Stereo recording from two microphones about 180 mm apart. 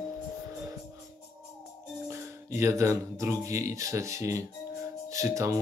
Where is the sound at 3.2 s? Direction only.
15° right (ahead or behind).